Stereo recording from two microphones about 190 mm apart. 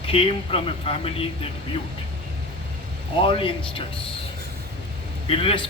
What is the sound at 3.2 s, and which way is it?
Speech, 30° left (ahead or behind).